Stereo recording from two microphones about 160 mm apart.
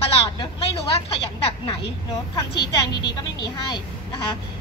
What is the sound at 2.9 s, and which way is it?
A woman's voice, 25° left (ahead or behind).